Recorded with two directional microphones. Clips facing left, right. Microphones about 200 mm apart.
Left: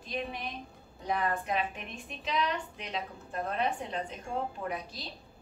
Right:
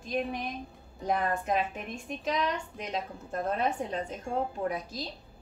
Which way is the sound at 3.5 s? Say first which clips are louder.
Right 1 dB; 45° right (ahead or behind).